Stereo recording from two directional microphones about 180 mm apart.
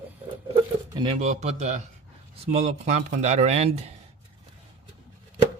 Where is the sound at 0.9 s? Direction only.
35° right (ahead or behind).